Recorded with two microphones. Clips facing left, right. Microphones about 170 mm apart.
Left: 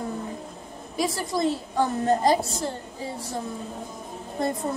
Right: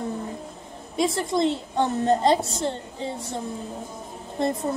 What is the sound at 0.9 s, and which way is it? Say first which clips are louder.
A woman's voice: right 3 dB; 25° right (ahead or behind).